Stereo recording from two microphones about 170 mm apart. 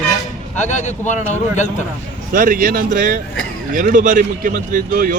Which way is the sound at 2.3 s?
50° right (ahead or behind).